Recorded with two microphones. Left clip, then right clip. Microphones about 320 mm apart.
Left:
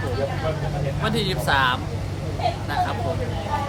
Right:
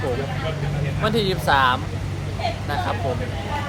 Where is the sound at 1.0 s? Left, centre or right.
Centre.